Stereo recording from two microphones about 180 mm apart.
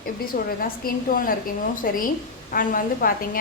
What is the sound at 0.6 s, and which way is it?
A woman's voice, 50° left (ahead or behind).